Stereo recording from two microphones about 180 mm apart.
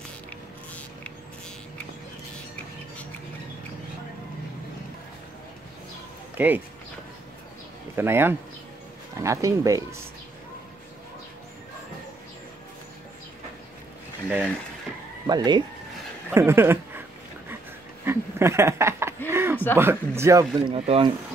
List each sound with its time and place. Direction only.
6.3 s speech: 10° right (ahead or behind)
7.9 s speech: 15° right (ahead or behind)
15.2 s speech: 25° right (ahead or behind)
18.0 s a sound: 15° right (ahead or behind)
19.5 s a sound: 10° left (ahead or behind)
19.8 s speech: 15° right (ahead or behind)
20.5 s speech: 30° right (ahead or behind)